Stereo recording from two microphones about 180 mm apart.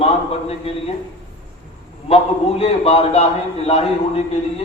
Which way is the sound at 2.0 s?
35° left (ahead or behind).